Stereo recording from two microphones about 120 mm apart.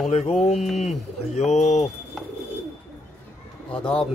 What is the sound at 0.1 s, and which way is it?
Speech, 65° left (ahead or behind).